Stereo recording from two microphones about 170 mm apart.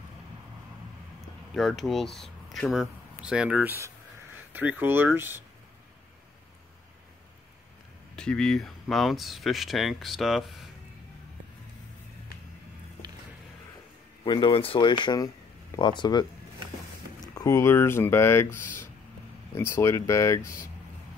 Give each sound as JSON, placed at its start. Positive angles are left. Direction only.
{"t": 1.5, "sound": "speech", "side_deg": 0}
{"t": 8.2, "sound": "speech", "side_deg": 5}
{"t": 14.2, "sound": "speech", "side_deg": 30}
{"t": 17.3, "sound": "speech", "side_deg": 20}